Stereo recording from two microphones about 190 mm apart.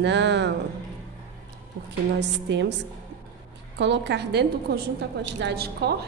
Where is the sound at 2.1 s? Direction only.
65° right (ahead or behind).